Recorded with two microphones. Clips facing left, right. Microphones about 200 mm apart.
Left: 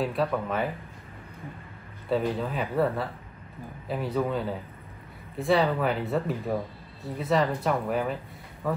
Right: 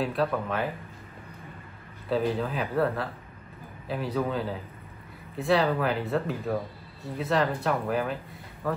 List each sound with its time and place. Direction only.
0.0 s speech: centre (ahead or behind)
2.0 s speech: centre (ahead or behind)